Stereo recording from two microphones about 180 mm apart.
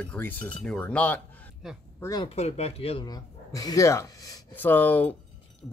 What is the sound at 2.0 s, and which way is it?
Speech, 20° left (ahead or behind).